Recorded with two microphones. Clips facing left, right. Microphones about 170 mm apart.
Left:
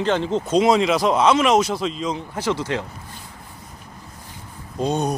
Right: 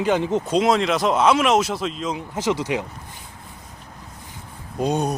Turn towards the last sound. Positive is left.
turn(degrees=-10)  # may be behind; listen again after turning